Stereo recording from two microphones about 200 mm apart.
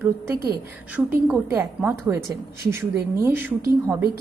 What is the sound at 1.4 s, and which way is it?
A woman's voice, 10° right (ahead or behind).